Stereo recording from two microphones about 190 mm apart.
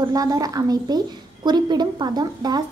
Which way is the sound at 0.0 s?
20° right (ahead or behind).